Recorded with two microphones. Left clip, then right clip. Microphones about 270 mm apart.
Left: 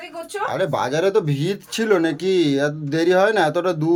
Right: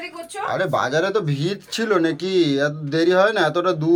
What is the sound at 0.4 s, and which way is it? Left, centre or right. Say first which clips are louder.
Speech: right 1 dB; centre.